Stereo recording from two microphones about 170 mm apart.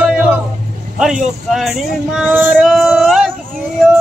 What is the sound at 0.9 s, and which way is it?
Speech, 5° right (ahead or behind).